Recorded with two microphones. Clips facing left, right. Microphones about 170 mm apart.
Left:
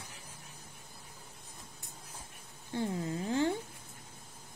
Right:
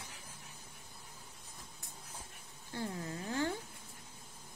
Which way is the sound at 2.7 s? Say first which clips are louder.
Left 6 dB; 20° left (ahead or behind).